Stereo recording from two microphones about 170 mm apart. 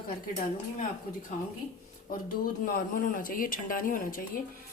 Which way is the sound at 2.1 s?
55° left (ahead or behind).